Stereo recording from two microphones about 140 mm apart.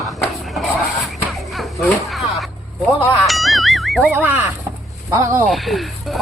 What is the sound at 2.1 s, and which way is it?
Speech, centre (ahead or behind).